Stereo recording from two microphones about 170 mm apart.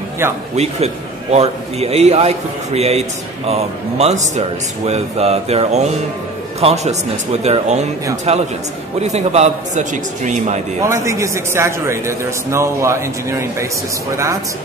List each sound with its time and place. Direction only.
0.6 s a man's voice: 40° right (ahead or behind)
10.8 s a man's voice: 15° right (ahead or behind)